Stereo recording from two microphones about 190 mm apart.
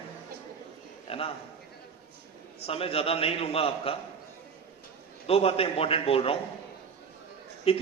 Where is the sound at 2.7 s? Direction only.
30° left (ahead or behind).